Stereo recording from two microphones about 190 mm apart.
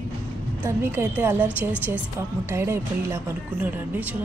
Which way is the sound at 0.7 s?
10° right (ahead or behind).